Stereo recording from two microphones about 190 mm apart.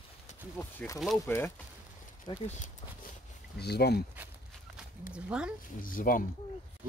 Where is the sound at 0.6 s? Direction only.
10° left (ahead or behind).